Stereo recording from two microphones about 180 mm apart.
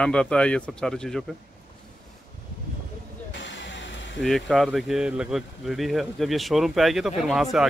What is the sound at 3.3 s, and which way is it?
Vehicle, 90° left.